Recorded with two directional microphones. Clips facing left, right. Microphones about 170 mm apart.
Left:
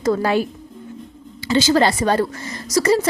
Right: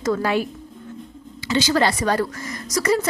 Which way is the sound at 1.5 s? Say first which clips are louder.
Left 3 dB; 30° left (ahead or behind).